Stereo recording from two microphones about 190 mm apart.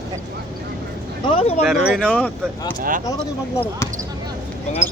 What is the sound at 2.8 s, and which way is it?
Speech, 45° right (ahead or behind).